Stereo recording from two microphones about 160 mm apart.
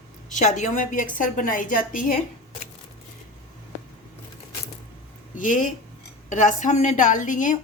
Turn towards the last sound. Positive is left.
turn(degrees=55)  # may be behind; listen again after turning